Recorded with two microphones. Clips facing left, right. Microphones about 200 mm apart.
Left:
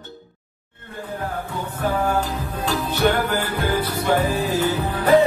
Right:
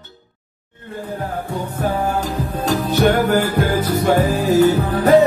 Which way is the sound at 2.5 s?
45° right (ahead or behind).